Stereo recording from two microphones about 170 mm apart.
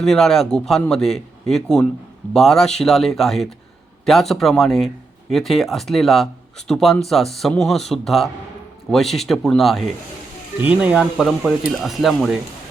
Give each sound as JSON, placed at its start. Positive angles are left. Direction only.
{"t": 0.0, "sound": "a man's voice", "side_deg": 0}